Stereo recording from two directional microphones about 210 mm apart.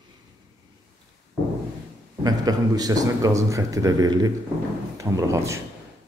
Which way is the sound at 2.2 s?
20° right (ahead or behind).